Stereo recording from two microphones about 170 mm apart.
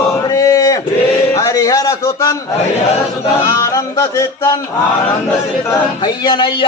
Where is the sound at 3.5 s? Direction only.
20° left (ahead or behind).